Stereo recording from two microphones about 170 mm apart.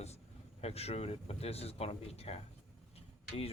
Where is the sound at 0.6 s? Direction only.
40° left (ahead or behind).